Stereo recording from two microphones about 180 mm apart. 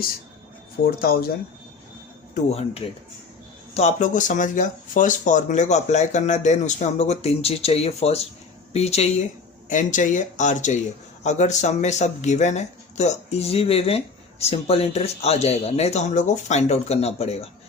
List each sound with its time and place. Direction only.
0.9 s speech: 55° left (ahead or behind)
2.3 s speech: 35° left (ahead or behind)